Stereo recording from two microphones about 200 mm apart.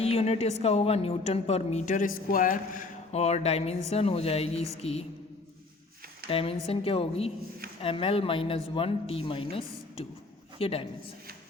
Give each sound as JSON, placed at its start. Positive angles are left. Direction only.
{"t": 0.0, "sound": "a woman's voice", "side_deg": 30}
{"t": 6.3, "sound": "speech", "side_deg": 30}